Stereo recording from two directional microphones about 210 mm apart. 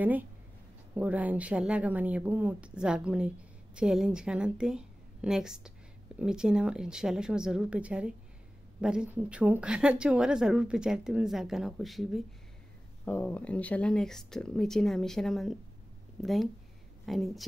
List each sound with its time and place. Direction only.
0.0 s a woman's voice: 10° right (ahead or behind)